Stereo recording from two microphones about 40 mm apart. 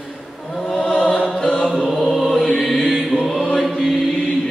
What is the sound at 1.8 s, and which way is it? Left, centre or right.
Chant, centre.